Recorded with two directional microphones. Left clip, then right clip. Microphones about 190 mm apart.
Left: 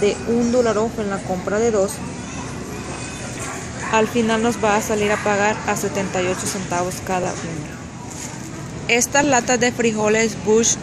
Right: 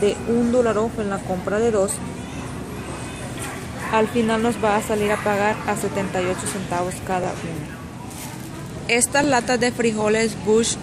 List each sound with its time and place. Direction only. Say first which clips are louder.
0.0 s speech: left 1 dB; centre (ahead or behind)
3.9 s speech: left 2 dB; centre (ahead or behind)
8.8 s speech: left 2 dB; centre (ahead or behind)